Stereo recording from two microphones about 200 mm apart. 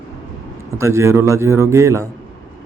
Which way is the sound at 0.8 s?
15° right (ahead or behind).